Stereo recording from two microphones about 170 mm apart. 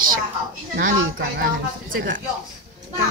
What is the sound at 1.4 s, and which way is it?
Speech, 75° right (ahead or behind).